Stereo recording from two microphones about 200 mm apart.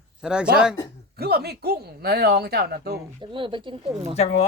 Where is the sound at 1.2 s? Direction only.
50° right (ahead or behind).